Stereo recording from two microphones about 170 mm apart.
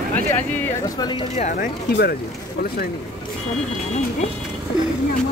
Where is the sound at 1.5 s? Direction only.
65° left (ahead or behind).